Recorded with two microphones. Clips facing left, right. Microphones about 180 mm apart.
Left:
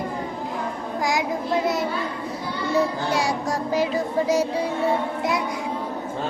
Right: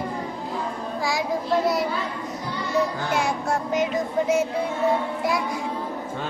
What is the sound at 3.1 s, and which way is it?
Child singing, 35° left (ahead or behind).